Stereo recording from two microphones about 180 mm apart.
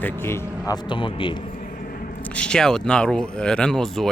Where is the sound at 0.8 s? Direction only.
25° left (ahead or behind).